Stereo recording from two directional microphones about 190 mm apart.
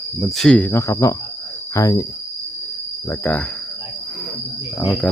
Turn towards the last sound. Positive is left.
turn(degrees=10)  # may be behind; listen again after turning